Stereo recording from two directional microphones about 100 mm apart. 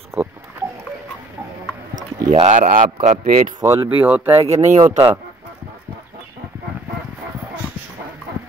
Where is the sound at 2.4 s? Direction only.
75° right (ahead or behind).